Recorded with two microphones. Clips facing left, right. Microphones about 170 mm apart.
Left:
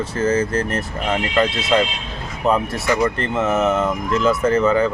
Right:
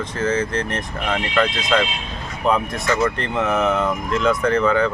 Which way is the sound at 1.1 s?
30° left (ahead or behind).